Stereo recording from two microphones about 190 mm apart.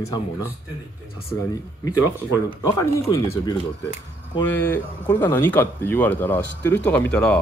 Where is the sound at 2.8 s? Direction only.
15° left (ahead or behind).